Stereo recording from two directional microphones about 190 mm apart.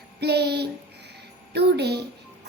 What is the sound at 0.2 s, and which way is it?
A child's voice, 60° right (ahead or behind).